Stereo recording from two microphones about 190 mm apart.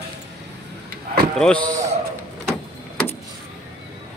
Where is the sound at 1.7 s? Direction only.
15° right (ahead or behind).